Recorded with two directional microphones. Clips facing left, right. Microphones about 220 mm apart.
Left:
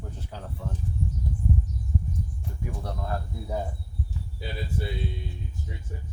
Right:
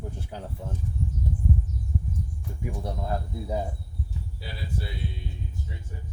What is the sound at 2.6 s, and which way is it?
Speech, 15° right (ahead or behind).